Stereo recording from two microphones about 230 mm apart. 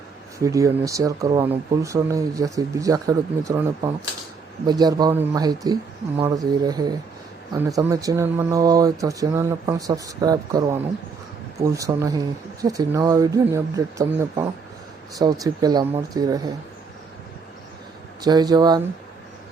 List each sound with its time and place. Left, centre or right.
0.3 s speech: centre
18.2 s speech: centre